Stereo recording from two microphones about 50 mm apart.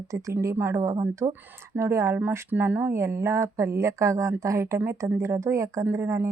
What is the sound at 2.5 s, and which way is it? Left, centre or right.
Speech, right.